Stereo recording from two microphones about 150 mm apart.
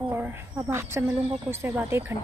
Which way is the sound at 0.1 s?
15° right (ahead or behind).